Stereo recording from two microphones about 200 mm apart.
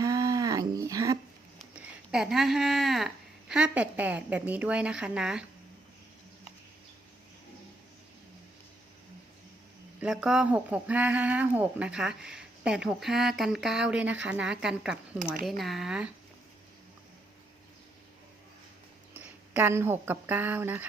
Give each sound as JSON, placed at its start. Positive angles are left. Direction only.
{"t": 0.0, "sound": "a sound", "side_deg": -15}
{"t": 1.7, "sound": "speech", "side_deg": -5}
{"t": 10.0, "sound": "speech", "side_deg": -5}
{"t": 19.2, "sound": "speech", "side_deg": -10}